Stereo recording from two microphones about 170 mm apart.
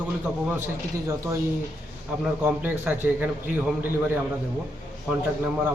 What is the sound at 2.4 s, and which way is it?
Speech, 10° right (ahead or behind).